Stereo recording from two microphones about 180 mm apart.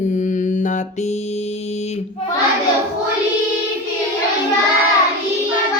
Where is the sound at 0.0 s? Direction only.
45° left (ahead or behind).